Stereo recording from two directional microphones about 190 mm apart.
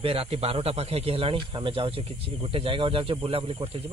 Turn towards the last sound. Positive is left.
turn(degrees=-30)  # may be behind; listen again after turning